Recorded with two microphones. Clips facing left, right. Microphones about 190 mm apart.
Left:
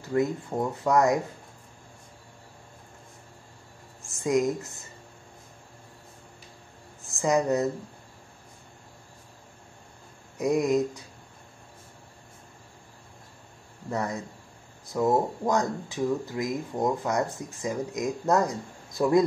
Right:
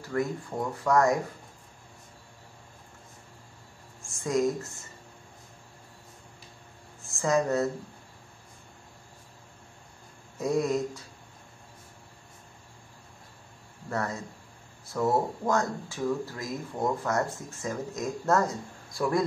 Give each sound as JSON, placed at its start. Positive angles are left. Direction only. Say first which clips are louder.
{"t": 0.1, "sound": "speech", "louder": "left 4 dB", "side_deg": 20}
{"t": 4.2, "sound": "speech", "louder": "left 2 dB", "side_deg": 20}
{"t": 7.1, "sound": "speech", "louder": "left 2 dB", "side_deg": 20}
{"t": 10.3, "sound": "a sound", "louder": "left 3 dB", "side_deg": 20}
{"t": 13.8, "sound": "speech", "louder": "left 2 dB", "side_deg": 15}